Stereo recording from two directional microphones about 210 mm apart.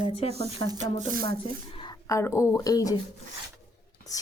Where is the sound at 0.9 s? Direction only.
45° right (ahead or behind).